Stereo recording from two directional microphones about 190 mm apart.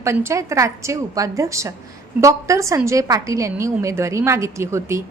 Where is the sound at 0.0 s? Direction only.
15° right (ahead or behind).